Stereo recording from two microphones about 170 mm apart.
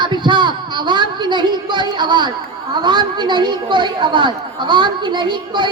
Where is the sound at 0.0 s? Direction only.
25° right (ahead or behind).